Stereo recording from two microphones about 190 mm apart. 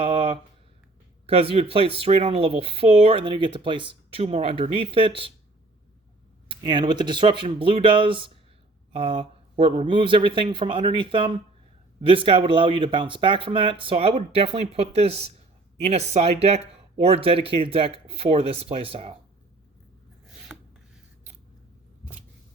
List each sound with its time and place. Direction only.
0.0 s a sound: 25° right (ahead or behind)
1.3 s speech: 30° right (ahead or behind)
6.5 s speech: 25° right (ahead or behind)
20.5 s rub: centre (ahead or behind)